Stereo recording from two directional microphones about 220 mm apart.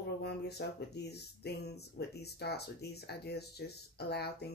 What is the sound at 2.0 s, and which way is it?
Speech, 45° left (ahead or behind).